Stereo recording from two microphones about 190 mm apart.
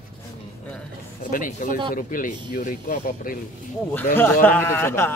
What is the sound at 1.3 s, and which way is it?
Speech, 45° left (ahead or behind).